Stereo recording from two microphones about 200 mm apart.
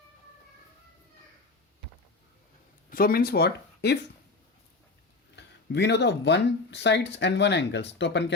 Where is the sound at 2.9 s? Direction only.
45° left (ahead or behind).